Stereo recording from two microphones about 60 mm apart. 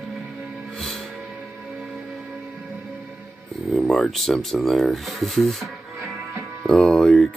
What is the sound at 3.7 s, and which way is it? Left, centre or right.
Speech, centre.